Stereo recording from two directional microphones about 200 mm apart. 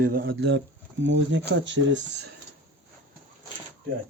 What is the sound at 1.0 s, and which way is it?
Speech, 65° right (ahead or behind).